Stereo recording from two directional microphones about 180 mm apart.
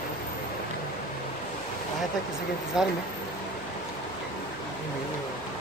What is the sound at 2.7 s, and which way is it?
Speech, 5° right (ahead or behind).